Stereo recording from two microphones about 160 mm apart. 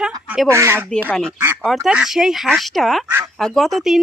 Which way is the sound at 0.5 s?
15° right (ahead or behind).